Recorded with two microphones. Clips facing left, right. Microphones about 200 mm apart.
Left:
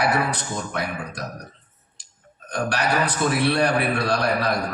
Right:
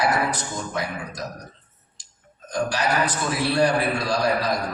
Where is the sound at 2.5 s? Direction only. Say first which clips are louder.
Even; 60° left (ahead or behind).